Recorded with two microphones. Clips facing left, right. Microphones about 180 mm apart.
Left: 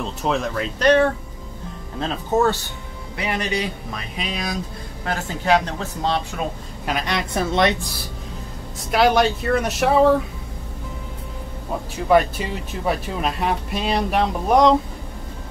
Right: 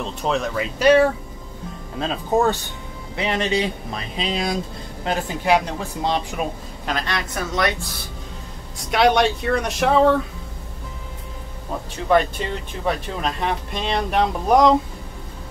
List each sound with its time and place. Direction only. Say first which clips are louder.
0.0 s speech: even; centre (ahead or behind); by 4.6 s 25° right (ahead or behind)
5.0 s speech: right 1 dB; 15° right (ahead or behind)
6.9 s speech: left 2 dB; 15° left (ahead or behind)
8.9 s speech: even; centre (ahead or behind)
12.1 s speech: left 1 dB; 5° left (ahead or behind)